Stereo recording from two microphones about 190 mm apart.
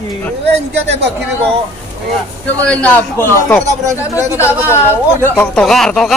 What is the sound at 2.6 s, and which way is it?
Speech, 10° left (ahead or behind).